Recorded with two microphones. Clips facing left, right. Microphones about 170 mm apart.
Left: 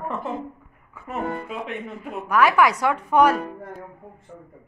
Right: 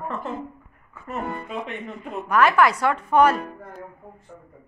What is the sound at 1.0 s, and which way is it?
Speech, 5° left (ahead or behind).